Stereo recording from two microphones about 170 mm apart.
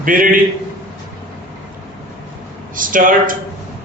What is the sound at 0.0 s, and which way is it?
Speech, 55° right (ahead or behind).